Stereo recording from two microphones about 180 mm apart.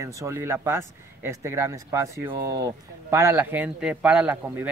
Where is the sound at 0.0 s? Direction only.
15° right (ahead or behind).